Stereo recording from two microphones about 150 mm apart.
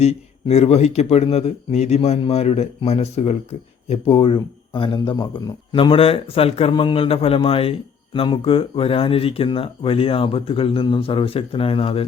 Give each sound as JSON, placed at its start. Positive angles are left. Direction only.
{"t": 0.0, "sound": "a man's voice", "side_deg": 45}
{"t": 5.7, "sound": "a man's voice", "side_deg": 35}